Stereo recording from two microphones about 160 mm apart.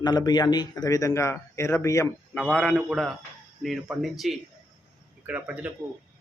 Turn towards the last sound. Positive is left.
turn(degrees=-10)  # may be behind; listen again after turning